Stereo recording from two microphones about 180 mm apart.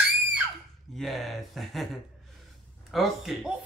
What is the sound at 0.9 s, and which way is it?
A man's voice, centre (ahead or behind).